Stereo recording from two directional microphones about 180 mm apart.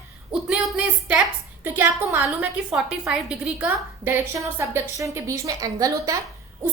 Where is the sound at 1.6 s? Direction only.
10° right (ahead or behind).